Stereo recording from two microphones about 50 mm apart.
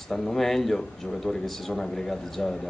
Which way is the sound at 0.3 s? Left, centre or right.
Centre.